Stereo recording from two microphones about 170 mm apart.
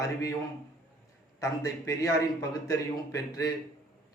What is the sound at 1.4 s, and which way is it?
A man's voice, 20° left (ahead or behind).